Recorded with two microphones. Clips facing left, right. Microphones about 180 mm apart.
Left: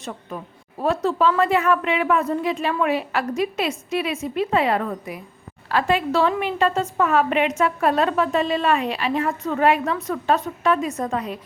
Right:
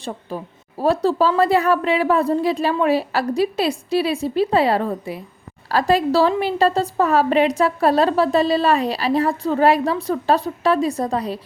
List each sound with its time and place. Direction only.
0.0 s a woman's voice: 30° right (ahead or behind)